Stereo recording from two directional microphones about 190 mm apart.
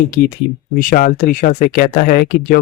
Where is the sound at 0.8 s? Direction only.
50° left (ahead or behind).